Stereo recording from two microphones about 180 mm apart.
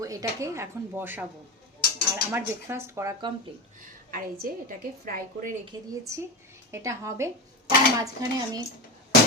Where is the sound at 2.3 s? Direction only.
15° right (ahead or behind).